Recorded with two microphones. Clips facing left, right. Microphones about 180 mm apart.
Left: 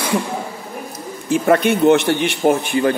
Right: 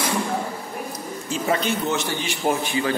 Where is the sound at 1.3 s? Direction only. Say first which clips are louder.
Left 9 dB; 60° left (ahead or behind).